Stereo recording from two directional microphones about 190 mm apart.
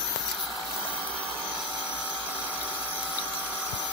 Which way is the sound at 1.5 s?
5° right (ahead or behind).